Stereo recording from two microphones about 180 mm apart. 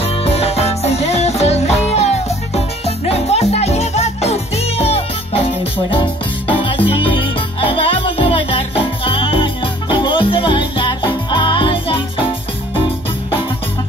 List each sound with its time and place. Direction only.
0.0 s music: 35° left (ahead or behind)